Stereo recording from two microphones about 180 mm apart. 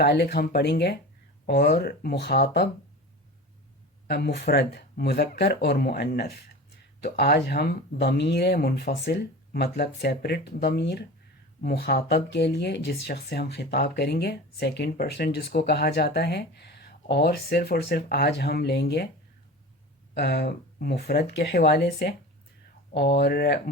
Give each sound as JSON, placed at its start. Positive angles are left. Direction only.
{"t": 0.0, "sound": "speech", "side_deg": 65}
{"t": 4.0, "sound": "speech", "side_deg": 60}
{"t": 20.1, "sound": "speech", "side_deg": 60}